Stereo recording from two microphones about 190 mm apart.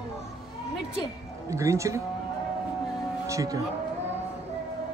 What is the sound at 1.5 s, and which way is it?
Speech, 15° right (ahead or behind).